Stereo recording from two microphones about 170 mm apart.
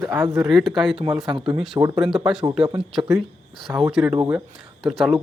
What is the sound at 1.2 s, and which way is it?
Speech, 25° right (ahead or behind).